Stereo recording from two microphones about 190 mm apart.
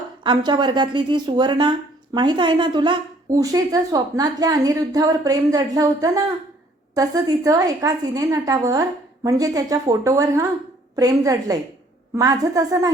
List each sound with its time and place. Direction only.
0.2 s a woman's voice: 25° right (ahead or behind)